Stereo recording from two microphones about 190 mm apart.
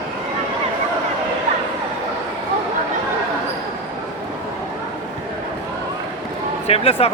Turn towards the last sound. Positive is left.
turn(degrees=30)  # may be behind; listen again after turning